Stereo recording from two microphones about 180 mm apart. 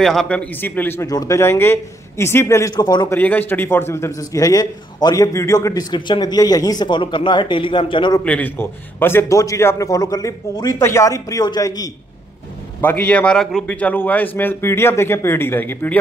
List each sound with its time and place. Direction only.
0.0 s a man's voice: centre (ahead or behind); by 3.2 s 20° left (ahead or behind)
3.2 s a man's voice: 10° left (ahead or behind); by 8.2 s 25° left (ahead or behind)
8.2 s a man's voice: 10° left (ahead or behind)
12.8 s a man's voice: 10° left (ahead or behind)